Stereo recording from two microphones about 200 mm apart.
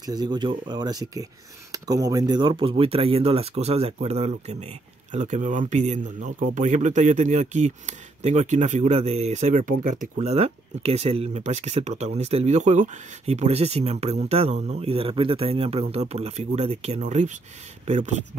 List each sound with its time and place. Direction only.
0.0 s speech: 20° right (ahead or behind); by 18.2 s 35° right (ahead or behind)